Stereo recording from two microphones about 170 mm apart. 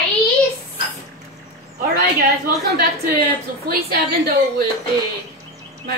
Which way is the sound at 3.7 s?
60° right (ahead or behind).